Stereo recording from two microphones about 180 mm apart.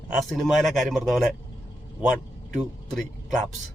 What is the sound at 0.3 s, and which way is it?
Speech, centre (ahead or behind).